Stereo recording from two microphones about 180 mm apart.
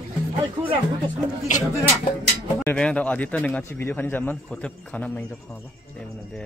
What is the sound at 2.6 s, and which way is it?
Speech, 5° left (ahead or behind).